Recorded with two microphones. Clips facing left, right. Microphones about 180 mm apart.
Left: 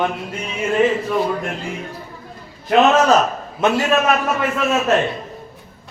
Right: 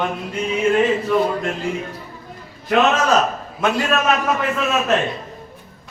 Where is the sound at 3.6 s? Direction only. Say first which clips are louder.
Left 3 dB; 25° left (ahead or behind).